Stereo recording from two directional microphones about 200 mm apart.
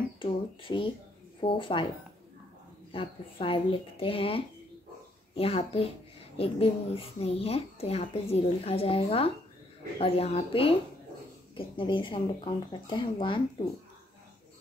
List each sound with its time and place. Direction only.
0.2 s speech: 25° left (ahead or behind)
2.9 s speech: 25° left (ahead or behind)